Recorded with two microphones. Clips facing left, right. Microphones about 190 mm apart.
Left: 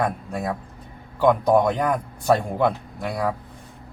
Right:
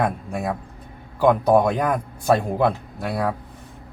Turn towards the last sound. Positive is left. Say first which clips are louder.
# right 1 dB
turn(degrees=-5)  # may be behind; listen again after turning